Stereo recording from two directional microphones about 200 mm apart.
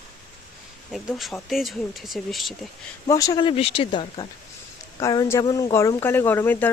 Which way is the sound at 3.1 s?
15° left (ahead or behind).